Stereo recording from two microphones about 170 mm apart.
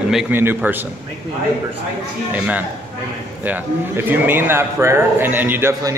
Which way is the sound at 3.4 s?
10° right (ahead or behind).